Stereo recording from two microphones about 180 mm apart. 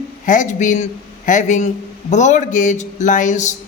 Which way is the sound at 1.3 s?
45° left (ahead or behind).